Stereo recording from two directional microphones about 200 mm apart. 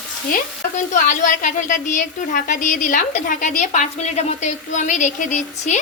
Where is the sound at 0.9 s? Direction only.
40° left (ahead or behind).